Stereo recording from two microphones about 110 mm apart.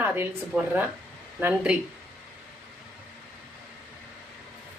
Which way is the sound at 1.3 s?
10° right (ahead or behind).